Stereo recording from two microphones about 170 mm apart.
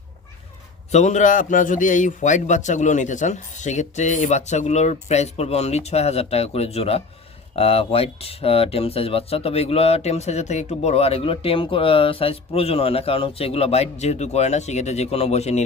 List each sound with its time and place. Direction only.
0.9 s a man's voice: 45° left (ahead or behind)